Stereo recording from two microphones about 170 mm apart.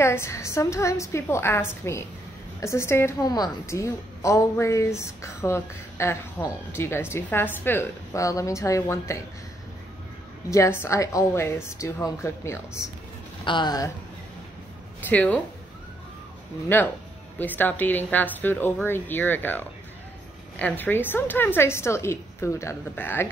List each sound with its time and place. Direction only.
0.0 s a woman's voice: 15° left (ahead or behind)
10.5 s a woman's voice: 15° left (ahead or behind)
13.4 s speech: 25° left (ahead or behind)
15.0 s speech: 10° left (ahead or behind)
16.6 s a woman's voice: 10° left (ahead or behind)